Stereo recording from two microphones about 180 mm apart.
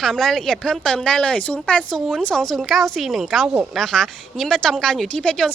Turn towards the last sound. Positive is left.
turn(degrees=5)  # may be behind; listen again after turning